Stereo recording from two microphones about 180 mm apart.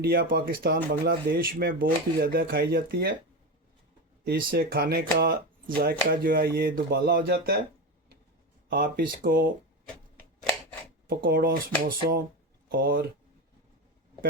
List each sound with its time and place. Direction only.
0.0 s speech: 55° right (ahead or behind)
4.2 s speech: 55° right (ahead or behind)
8.7 s speech: 55° right (ahead or behind)
11.1 s speech: 55° right (ahead or behind)